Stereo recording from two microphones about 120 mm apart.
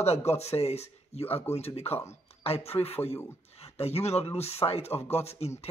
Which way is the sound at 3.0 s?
20° left (ahead or behind).